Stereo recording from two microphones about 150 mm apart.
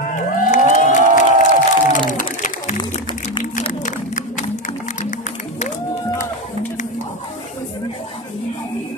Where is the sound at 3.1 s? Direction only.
55° left (ahead or behind).